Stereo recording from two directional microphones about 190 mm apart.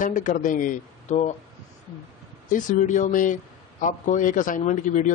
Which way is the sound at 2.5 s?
40° left (ahead or behind).